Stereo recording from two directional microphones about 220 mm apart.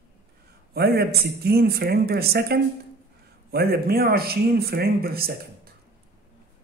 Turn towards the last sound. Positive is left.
turn(degrees=-45)  # may be behind; listen again after turning